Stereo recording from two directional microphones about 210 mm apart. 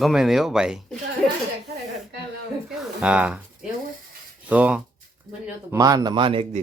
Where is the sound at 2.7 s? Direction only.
5° right (ahead or behind).